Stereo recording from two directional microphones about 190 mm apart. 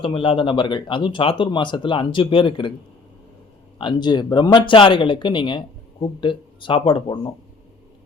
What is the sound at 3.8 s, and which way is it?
Speech, 25° left (ahead or behind).